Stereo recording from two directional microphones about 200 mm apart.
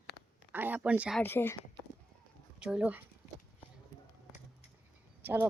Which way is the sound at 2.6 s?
5° right (ahead or behind).